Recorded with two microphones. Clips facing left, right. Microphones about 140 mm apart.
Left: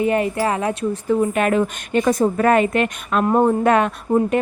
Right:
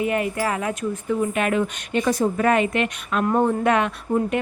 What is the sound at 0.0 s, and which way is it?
Speech, 30° left (ahead or behind).